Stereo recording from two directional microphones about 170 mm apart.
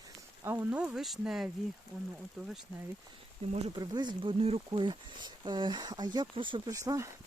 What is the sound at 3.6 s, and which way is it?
Speech, 25° right (ahead or behind).